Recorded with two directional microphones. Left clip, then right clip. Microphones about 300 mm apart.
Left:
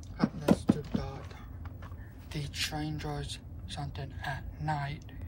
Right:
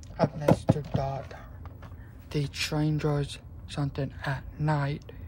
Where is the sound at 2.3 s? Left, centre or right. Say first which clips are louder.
Right 5 dB; centre.